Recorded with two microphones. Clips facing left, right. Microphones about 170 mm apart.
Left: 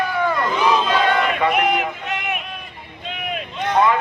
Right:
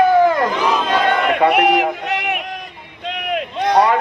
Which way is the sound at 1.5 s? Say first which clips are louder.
Right 5 dB; 70° right (ahead or behind).